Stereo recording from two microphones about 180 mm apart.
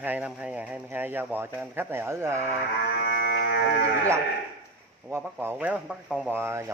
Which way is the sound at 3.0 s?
65° left (ahead or behind).